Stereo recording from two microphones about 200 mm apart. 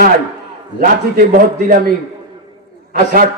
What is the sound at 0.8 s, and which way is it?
Speech, 45° right (ahead or behind).